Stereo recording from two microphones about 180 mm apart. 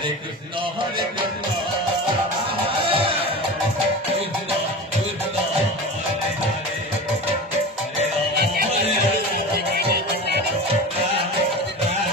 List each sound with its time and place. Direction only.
2.8 s music: 30° right (ahead or behind)
9.7 s music: 60° right (ahead or behind)